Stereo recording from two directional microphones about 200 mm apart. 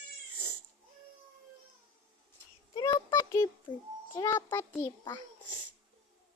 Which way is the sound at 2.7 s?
15° left (ahead or behind).